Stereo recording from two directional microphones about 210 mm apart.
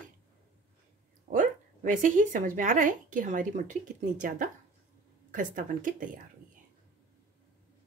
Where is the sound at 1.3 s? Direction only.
25° right (ahead or behind).